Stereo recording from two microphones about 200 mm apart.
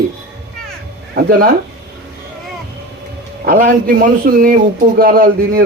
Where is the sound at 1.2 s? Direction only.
50° right (ahead or behind).